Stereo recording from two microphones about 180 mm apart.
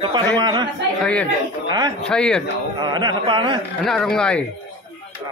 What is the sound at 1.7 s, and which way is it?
Speech, 25° right (ahead or behind).